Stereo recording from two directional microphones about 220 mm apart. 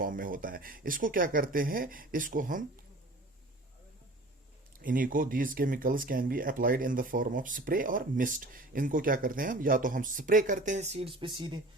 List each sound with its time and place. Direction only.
0.0 s speech: 40° right (ahead or behind)
4.8 s speech: 40° right (ahead or behind); by 11.6 s 20° right (ahead or behind)